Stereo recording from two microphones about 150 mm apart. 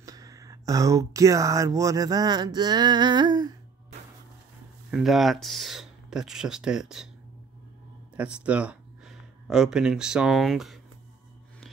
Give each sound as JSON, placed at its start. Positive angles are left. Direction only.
{"t": 0.0, "sound": "speech", "side_deg": -25}
{"t": 4.9, "sound": "speech", "side_deg": 0}
{"t": 8.2, "sound": "speech", "side_deg": -10}